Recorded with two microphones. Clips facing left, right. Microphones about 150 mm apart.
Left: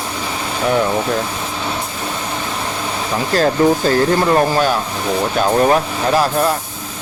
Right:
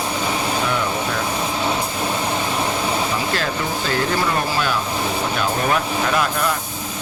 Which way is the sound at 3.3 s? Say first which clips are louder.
Left 10 dB; 40° left (ahead or behind).